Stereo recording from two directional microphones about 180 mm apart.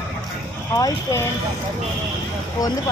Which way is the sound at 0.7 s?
20° left (ahead or behind).